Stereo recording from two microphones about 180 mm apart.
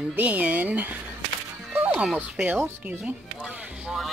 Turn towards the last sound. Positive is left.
turn(degrees=-5)  # may be behind; listen again after turning